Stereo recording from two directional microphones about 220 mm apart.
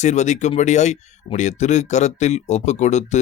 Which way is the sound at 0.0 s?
30° left (ahead or behind).